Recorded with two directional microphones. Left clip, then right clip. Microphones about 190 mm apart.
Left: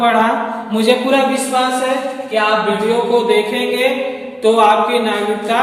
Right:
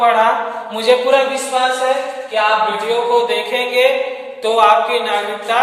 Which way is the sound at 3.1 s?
25° right (ahead or behind).